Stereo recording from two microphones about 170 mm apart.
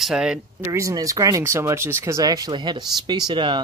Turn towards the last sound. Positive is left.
turn(degrees=-30)  # may be behind; listen again after turning